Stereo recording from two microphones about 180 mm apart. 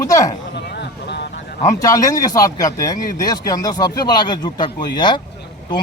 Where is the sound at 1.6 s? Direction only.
20° left (ahead or behind).